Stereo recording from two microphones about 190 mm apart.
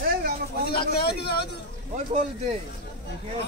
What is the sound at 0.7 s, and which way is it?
Speech, 55° left (ahead or behind).